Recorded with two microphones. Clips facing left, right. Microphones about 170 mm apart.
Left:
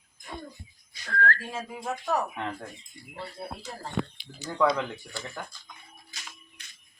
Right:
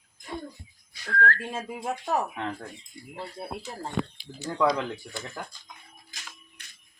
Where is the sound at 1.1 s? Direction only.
Centre (ahead or behind).